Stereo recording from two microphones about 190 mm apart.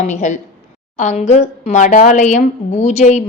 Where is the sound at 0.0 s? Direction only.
40° left (ahead or behind).